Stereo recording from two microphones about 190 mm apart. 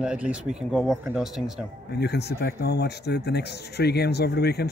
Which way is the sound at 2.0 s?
60° left (ahead or behind).